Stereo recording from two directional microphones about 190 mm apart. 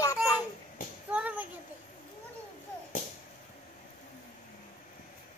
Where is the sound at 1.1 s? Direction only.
10° right (ahead or behind).